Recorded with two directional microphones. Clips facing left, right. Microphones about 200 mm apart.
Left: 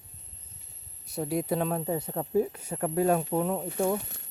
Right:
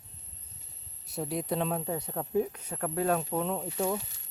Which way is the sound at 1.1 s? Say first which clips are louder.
Left 3 dB; centre (ahead or behind).